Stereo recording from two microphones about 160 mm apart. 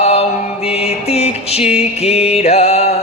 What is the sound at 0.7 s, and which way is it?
Mantra, 40° left (ahead or behind).